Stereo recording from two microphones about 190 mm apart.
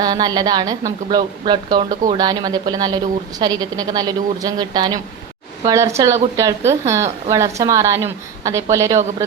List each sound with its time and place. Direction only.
0.0 s a woman's voice: 20° right (ahead or behind)